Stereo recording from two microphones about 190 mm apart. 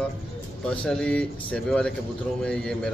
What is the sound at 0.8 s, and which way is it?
Speech, 5° left (ahead or behind).